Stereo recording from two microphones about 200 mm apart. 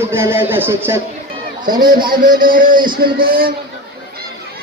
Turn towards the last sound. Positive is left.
turn(degrees=-45)  # may be behind; listen again after turning